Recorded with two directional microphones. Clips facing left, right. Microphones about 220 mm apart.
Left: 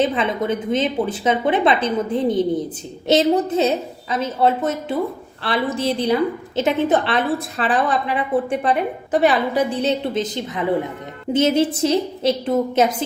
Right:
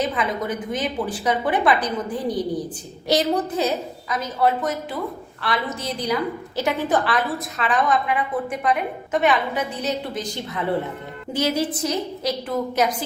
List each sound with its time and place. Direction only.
0.0 s a woman's voice: 25° left (ahead or behind)